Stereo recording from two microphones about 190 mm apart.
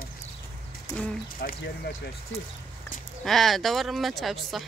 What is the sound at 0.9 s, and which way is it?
Speech, 15° left (ahead or behind).